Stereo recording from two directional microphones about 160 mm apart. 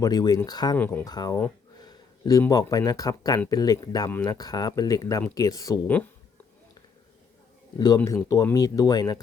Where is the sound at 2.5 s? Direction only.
25° left (ahead or behind).